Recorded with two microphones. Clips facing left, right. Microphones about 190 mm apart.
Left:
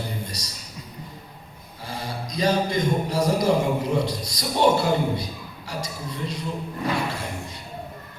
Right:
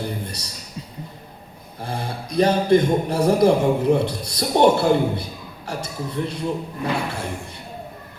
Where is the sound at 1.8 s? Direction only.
60° right (ahead or behind).